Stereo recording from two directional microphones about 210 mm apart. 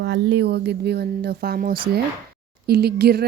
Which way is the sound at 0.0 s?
55° right (ahead or behind).